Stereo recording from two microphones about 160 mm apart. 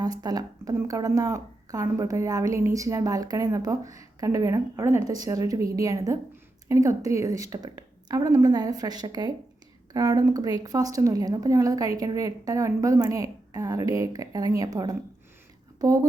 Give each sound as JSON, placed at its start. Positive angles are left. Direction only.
{"t": 0.0, "sound": "a woman's voice", "side_deg": -25}